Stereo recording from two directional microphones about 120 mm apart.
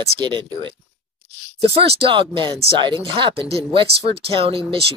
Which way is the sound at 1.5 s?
55° right (ahead or behind).